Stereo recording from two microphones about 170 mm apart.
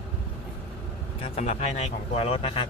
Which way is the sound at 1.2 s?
40° left (ahead or behind).